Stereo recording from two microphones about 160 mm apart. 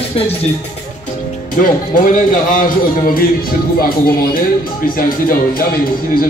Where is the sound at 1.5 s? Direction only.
55° left (ahead or behind).